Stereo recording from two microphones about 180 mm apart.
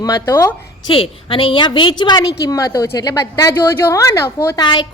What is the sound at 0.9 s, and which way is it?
A woman's voice, 30° left (ahead or behind).